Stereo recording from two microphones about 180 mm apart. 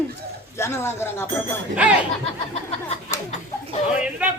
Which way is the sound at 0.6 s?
15° left (ahead or behind).